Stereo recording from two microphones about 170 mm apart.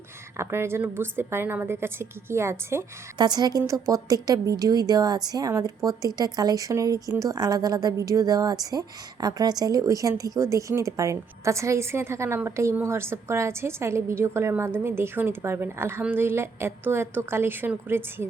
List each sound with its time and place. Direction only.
0.3 s a woman's voice: 15° right (ahead or behind)